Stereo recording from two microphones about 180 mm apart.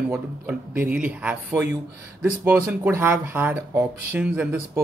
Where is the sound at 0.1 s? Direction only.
10° right (ahead or behind).